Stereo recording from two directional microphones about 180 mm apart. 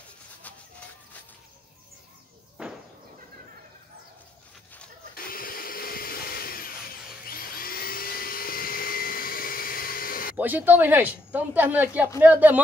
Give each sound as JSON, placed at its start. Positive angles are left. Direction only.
{"t": 2.6, "sound": "a sound", "side_deg": -5}
{"t": 5.1, "sound": "vacuum cleaner", "side_deg": 55}
{"t": 10.3, "sound": "speech", "side_deg": -10}